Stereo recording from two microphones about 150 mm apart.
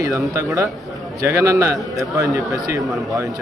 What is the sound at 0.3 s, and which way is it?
A man's voice, 20° right (ahead or behind).